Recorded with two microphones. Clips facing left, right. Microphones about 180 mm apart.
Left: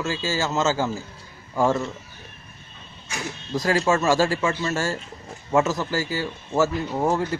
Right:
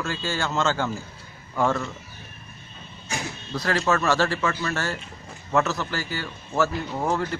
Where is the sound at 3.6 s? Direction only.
10° left (ahead or behind).